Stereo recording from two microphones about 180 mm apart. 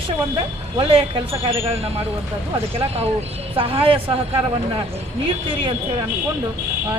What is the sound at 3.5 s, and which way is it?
Speech, 30° right (ahead or behind).